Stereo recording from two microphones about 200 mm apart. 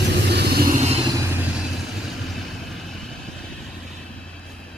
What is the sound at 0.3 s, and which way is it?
Vehicle, 55° right (ahead or behind).